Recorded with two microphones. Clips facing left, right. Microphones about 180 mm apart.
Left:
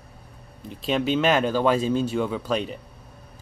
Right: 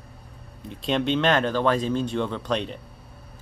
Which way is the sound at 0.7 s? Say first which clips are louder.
Even; 5° left (ahead or behind).